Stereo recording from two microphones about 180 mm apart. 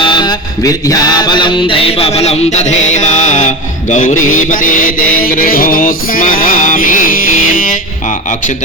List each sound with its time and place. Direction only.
0.0 s music: 25° left (ahead or behind); by 7.8 s 50° left (ahead or behind)